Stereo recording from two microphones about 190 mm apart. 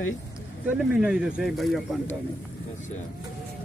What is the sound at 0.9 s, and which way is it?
Speech, 5° right (ahead or behind).